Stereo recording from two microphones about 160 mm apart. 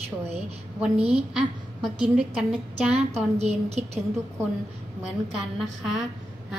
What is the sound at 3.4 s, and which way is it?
Speech, 45° right (ahead or behind).